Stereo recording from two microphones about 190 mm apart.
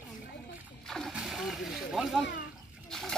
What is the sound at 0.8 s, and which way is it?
Splash, centre (ahead or behind).